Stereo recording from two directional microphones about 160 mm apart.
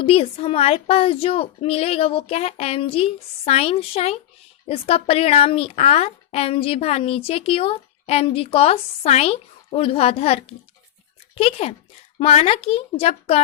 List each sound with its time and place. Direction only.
0.0 s speech: 35° left (ahead or behind)